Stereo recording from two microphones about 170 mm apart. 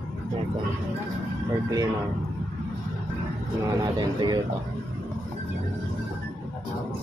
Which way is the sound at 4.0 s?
25° right (ahead or behind).